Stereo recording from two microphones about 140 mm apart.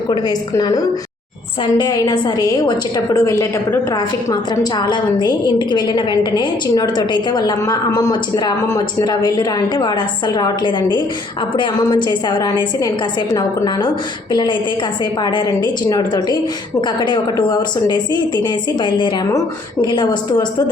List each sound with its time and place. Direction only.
0.1 s a woman's voice: 30° left (ahead or behind)
15.2 s a woman's voice: 30° left (ahead or behind)